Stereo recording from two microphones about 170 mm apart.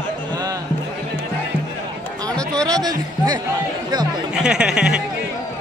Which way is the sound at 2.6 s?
20° right (ahead or behind).